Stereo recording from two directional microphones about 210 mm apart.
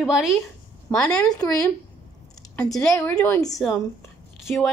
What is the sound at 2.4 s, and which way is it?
A woman's voice, 5° left (ahead or behind).